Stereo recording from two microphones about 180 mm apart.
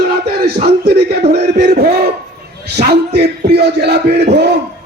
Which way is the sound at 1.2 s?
40° right (ahead or behind).